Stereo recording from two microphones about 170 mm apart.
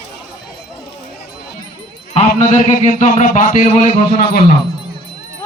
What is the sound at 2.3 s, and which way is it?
Speech, 45° left (ahead or behind).